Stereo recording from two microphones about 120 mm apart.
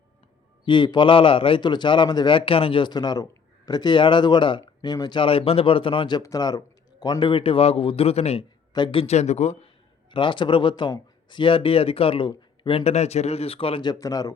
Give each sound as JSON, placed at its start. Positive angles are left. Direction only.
{"t": 0.6, "sound": "a man's voice", "side_deg": 40}
{"t": 6.2, "sound": "a man's voice", "side_deg": 30}
{"t": 8.7, "sound": "speech", "side_deg": 45}
{"t": 10.1, "sound": "a man's voice", "side_deg": 40}
{"t": 13.8, "sound": "a man's voice", "side_deg": 30}